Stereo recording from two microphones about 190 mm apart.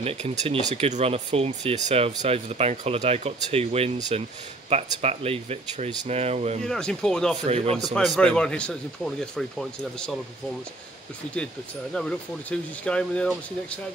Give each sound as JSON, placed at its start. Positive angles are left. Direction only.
{"t": 0.0, "sound": "speech", "side_deg": -35}
{"t": 6.6, "sound": "speech", "side_deg": 5}
{"t": 7.4, "sound": "speech", "side_deg": -30}
{"t": 8.2, "sound": "speech", "side_deg": 5}
{"t": 11.9, "sound": "speech", "side_deg": 5}